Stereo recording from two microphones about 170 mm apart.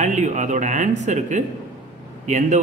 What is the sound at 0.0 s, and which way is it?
A man's voice, 45° right (ahead or behind).